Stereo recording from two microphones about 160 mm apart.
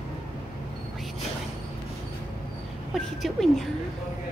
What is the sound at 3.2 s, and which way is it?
Speech, centre (ahead or behind).